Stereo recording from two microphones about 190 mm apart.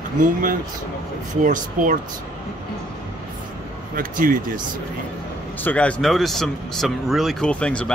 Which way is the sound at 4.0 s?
45° right (ahead or behind).